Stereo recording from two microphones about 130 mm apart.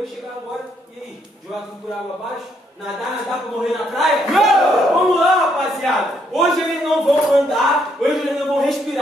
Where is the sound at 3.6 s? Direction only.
Centre (ahead or behind).